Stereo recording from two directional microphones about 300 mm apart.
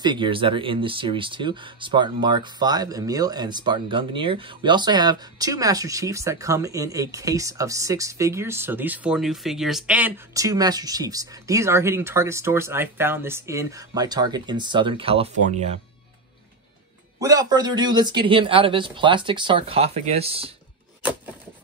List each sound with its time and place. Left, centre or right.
0.0 s speech: centre
17.2 s speech: centre